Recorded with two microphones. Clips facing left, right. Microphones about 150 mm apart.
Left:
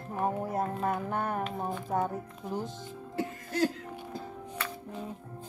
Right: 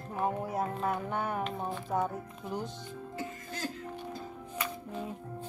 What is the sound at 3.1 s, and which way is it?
Speech, 65° left (ahead or behind).